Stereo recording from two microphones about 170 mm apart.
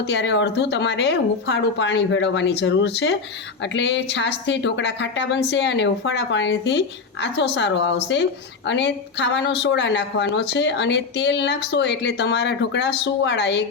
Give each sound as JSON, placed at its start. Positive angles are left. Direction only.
{"t": 0.0, "sound": "a woman's voice", "side_deg": 90}